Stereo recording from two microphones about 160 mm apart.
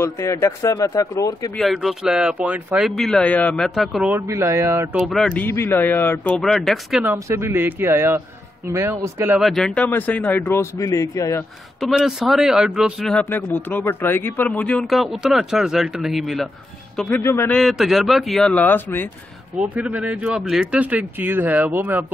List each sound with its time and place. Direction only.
0.0 s speech: 20° left (ahead or behind)
1.6 s speech: centre (ahead or behind)
4.1 s speech: 15° right (ahead or behind)
4.9 s speech: centre (ahead or behind)
6.3 s speech: centre (ahead or behind)
7.1 s speech: 15° right (ahead or behind)
9.4 s speech: 5° left (ahead or behind); by 11.4 s 20° left (ahead or behind)
11.8 s speech: 5° right (ahead or behind)
13.1 s speech: 10° left (ahead or behind)
17.2 s speech: 15° left (ahead or behind)
17.6 s speech: centre (ahead or behind)
19.6 s speech: 10° right (ahead or behind)